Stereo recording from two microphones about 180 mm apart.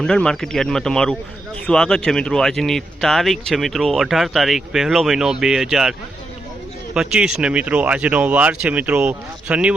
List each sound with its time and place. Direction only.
0.0 s speech: 5° left (ahead or behind)
6.9 s speech: 5° right (ahead or behind)